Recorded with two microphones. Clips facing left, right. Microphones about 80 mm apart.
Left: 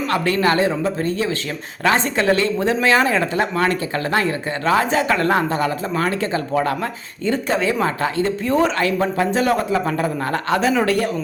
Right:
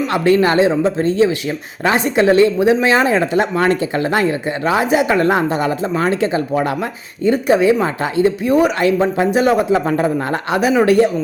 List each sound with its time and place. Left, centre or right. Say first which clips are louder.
0.1 s a woman's voice: right 4 dB; right